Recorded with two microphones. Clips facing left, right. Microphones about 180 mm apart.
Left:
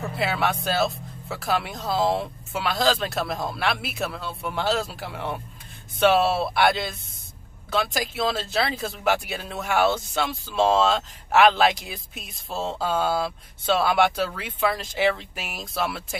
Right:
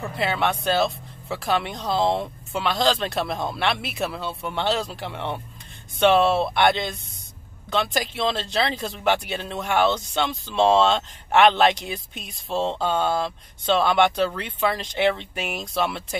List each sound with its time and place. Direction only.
0.1 s speech: 5° left (ahead or behind)